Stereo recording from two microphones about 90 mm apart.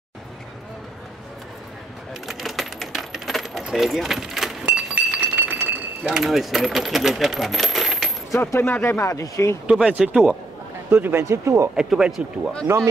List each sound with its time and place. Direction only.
2.2 s coin: centre (ahead or behind); by 5.8 s 20° right (ahead or behind)
6.0 s coin: 5° right (ahead or behind)
8.5 s speech: 25° left (ahead or behind)
9.7 s speech: 10° right (ahead or behind)
10.9 s speech: 20° right (ahead or behind)
11.7 s speech: 10° right (ahead or behind)
12.7 s speech: 25° right (ahead or behind)